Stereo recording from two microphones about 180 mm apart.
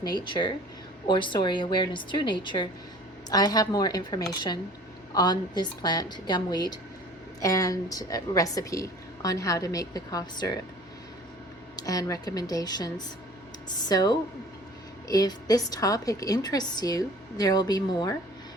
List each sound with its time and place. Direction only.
0.0 s a woman's voice: 25° left (ahead or behind)
11.8 s a woman's voice: 20° left (ahead or behind)